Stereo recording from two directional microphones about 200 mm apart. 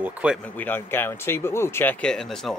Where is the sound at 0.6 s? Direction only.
10° left (ahead or behind).